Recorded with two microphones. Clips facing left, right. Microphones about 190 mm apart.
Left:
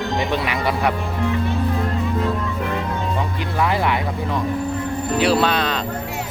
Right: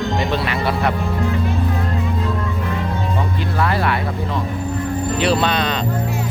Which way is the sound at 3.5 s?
15° left (ahead or behind).